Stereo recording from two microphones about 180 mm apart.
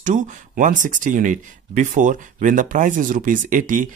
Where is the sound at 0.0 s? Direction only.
45° right (ahead or behind).